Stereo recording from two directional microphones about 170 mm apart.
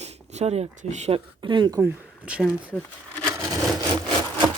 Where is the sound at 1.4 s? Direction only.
30° right (ahead or behind).